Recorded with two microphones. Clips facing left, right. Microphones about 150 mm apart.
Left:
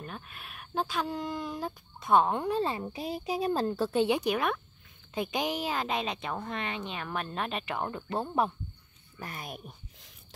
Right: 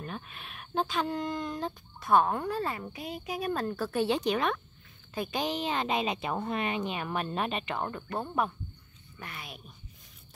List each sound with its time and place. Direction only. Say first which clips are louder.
0.0 s speech: right 2 dB; centre (ahead or behind)
2.0 s a woman's voice: even; 20° left (ahead or behind)
7.9 s speech: left 2 dB; 25° left (ahead or behind)
9.2 s a woman's voice: left 4 dB; 40° left (ahead or behind)